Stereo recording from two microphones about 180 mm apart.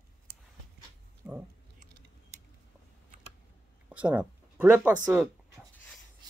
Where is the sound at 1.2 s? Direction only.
10° right (ahead or behind).